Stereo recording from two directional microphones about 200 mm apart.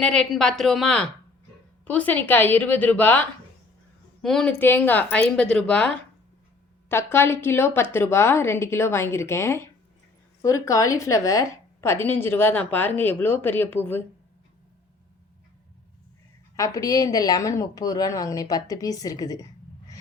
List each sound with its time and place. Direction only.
0.0 s a woman's voice: 5° left (ahead or behind)
16.6 s a woman's voice: 15° left (ahead or behind)